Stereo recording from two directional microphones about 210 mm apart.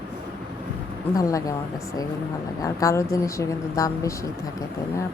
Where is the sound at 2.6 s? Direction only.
15° left (ahead or behind).